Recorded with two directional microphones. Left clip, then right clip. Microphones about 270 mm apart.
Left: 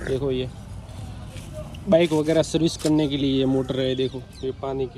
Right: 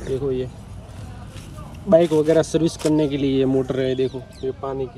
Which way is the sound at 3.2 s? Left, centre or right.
Right.